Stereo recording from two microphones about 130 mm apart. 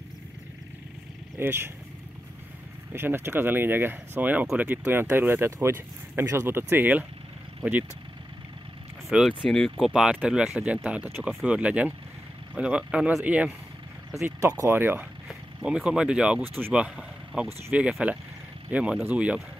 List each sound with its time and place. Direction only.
1.4 s speech: 20° right (ahead or behind)
2.9 s speech: 15° right (ahead or behind)
9.1 s speech: 5° right (ahead or behind)
14.2 s speech: 25° right (ahead or behind)